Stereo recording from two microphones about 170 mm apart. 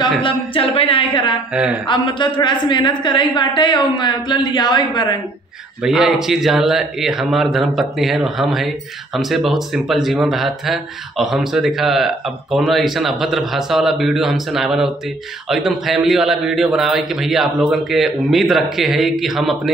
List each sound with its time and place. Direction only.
0.2 s speech: 35° left (ahead or behind)
1.5 s speech: 5° right (ahead or behind)
1.9 s a woman's voice: 30° left (ahead or behind)
5.9 s speech: centre (ahead or behind)